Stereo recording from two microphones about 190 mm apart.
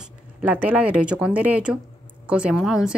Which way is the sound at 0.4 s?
10° right (ahead or behind).